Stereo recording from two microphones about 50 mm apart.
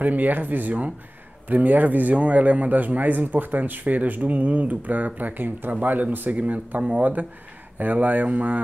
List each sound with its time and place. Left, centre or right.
0.0 s a man's voice: right